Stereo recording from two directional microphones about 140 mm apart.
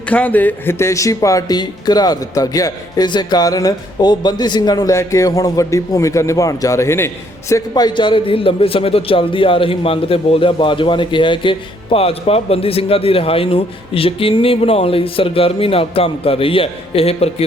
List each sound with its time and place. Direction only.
0.1 s a man's voice: 10° left (ahead or behind); by 17.2 s 45° left (ahead or behind)